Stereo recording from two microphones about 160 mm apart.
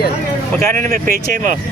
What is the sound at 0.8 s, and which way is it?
Speech, 60° right (ahead or behind).